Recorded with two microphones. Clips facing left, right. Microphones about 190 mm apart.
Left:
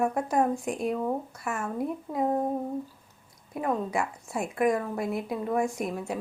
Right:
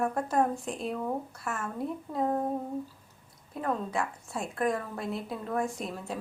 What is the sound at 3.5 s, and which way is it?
A woman's voice, 10° left (ahead or behind).